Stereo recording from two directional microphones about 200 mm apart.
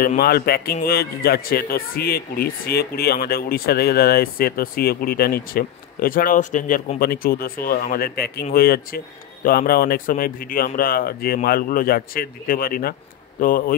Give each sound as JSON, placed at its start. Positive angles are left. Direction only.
{"t": 0.0, "sound": "a man's voice", "side_deg": 50}